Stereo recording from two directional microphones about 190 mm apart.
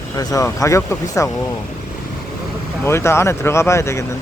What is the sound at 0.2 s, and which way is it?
Speech, 20° left (ahead or behind).